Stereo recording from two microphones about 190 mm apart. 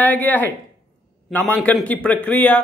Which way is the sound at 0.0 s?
10° left (ahead or behind).